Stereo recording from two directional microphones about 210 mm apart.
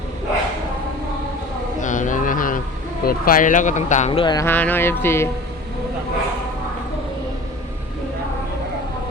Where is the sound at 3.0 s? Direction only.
45° left (ahead or behind); by 5.3 s 10° left (ahead or behind).